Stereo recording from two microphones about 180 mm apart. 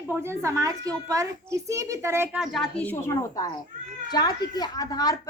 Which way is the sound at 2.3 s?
Centre (ahead or behind).